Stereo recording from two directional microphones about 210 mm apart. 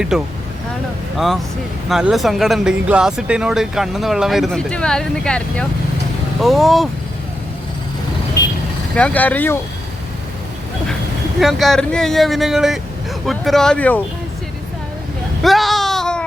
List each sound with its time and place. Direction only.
0.1 s speech: centre (ahead or behind)
1.9 s speech: centre (ahead or behind)
9.0 s speech: 5° left (ahead or behind)
11.3 s speech: centre (ahead or behind)
15.4 s a sound: centre (ahead or behind)